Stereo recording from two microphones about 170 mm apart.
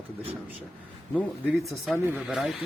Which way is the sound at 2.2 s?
Centre (ahead or behind).